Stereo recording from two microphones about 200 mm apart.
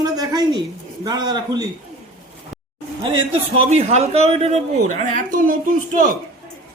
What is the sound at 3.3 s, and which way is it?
Speech, 30° right (ahead or behind).